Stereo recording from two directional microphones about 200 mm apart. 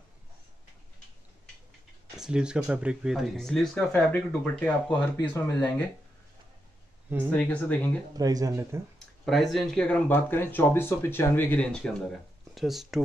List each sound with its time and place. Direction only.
2.1 s speech: 5° right (ahead or behind)
7.2 s speech: 5° left (ahead or behind)
8.2 s speech: 20° right (ahead or behind)
9.2 s speech: centre (ahead or behind)